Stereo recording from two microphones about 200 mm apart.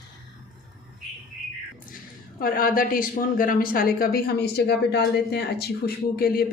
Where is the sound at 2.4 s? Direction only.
45° left (ahead or behind).